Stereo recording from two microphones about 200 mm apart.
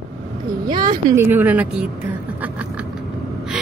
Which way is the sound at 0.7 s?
20° right (ahead or behind).